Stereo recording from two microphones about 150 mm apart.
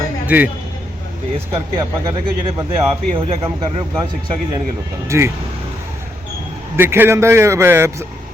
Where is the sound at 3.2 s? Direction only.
40° right (ahead or behind).